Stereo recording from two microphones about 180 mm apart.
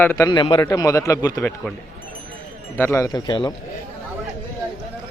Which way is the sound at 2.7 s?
10° left (ahead or behind).